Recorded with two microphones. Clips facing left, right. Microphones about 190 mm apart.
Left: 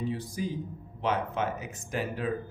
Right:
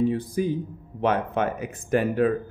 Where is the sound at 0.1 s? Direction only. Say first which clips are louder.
Right 8 dB; 55° right (ahead or behind).